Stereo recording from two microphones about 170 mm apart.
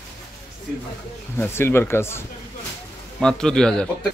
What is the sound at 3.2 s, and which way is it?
Speech, 5° left (ahead or behind).